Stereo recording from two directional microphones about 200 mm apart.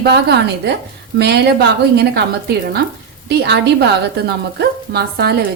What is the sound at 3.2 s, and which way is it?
A woman's voice, 55° right (ahead or behind).